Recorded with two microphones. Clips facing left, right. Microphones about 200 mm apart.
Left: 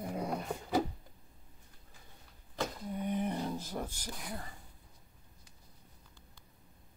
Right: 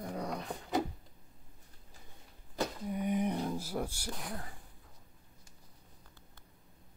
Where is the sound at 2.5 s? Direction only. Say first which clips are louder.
Right 2 dB; 10° right (ahead or behind).